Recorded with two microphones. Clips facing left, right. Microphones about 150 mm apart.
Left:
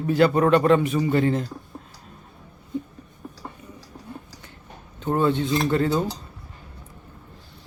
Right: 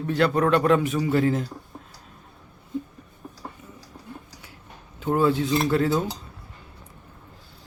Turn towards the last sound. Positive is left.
turn(degrees=0)  # may be behind; listen again after turning